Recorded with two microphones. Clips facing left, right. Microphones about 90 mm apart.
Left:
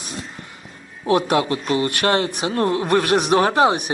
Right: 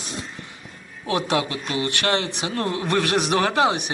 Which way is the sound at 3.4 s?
25° left (ahead or behind).